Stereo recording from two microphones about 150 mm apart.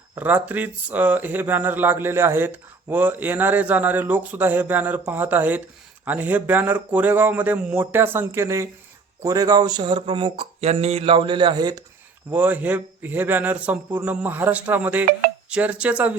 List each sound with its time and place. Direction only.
0.2 s speech: 10° right (ahead or behind); by 11.8 s 30° right (ahead or behind)
12.3 s speech: 10° right (ahead or behind)